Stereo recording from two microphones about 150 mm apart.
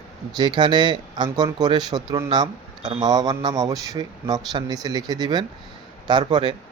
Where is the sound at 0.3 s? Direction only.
30° right (ahead or behind).